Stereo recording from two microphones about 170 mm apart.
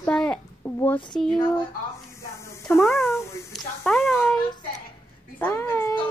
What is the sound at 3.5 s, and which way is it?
Speech, 5° left (ahead or behind).